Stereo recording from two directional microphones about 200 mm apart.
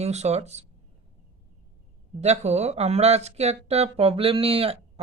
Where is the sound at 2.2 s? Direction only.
35° right (ahead or behind).